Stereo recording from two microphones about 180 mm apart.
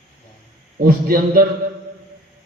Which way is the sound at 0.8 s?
55° right (ahead or behind).